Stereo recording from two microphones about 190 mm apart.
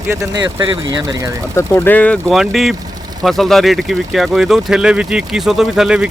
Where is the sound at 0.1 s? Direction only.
20° right (ahead or behind).